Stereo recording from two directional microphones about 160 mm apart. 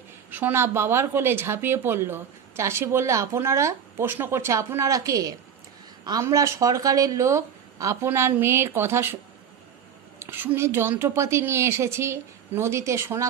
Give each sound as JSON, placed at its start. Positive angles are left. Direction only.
{"t": 0.3, "sound": "a woman's voice", "side_deg": -15}